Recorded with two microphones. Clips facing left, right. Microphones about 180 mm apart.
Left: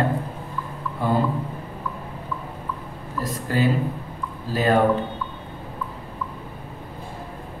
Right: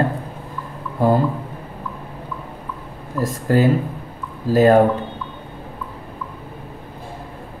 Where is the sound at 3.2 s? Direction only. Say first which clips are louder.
Right 6 dB; 45° right (ahead or behind).